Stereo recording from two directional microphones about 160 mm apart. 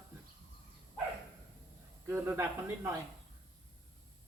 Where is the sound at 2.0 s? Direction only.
15° right (ahead or behind).